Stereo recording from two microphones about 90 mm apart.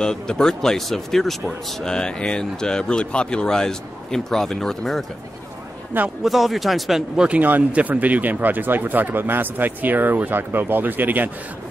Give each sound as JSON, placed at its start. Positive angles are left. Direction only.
{"t": 0.0, "sound": "speech", "side_deg": 5}
{"t": 6.0, "sound": "speech", "side_deg": 0}
{"t": 7.2, "sound": "speech", "side_deg": -20}